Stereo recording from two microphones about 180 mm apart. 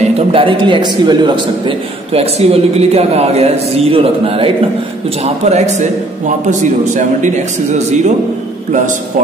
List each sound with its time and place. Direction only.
0.0 s a man's voice: 30° right (ahead or behind)